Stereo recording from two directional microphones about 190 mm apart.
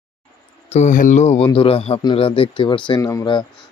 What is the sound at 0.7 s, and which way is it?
Speech, 40° left (ahead or behind).